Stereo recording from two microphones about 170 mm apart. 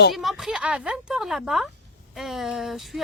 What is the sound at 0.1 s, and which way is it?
Speech, centre (ahead or behind).